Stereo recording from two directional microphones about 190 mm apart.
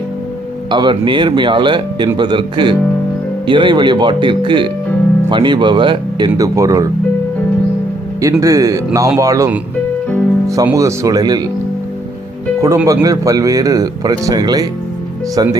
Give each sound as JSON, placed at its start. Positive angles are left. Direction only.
{"t": 0.7, "sound": "speech", "side_deg": -25}
{"t": 8.2, "sound": "speech", "side_deg": -15}
{"t": 12.6, "sound": "speech", "side_deg": -15}